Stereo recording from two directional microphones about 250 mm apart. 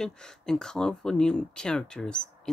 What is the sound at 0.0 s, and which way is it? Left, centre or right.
Speech, centre.